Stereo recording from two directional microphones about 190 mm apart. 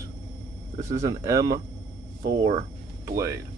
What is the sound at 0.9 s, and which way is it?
Speech, 15° right (ahead or behind).